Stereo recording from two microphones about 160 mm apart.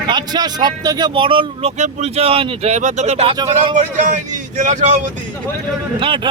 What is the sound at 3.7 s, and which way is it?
A man's voice, 50° right (ahead or behind).